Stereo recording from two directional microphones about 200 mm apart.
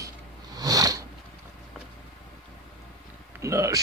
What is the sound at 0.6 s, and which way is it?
Sniff, 15° right (ahead or behind).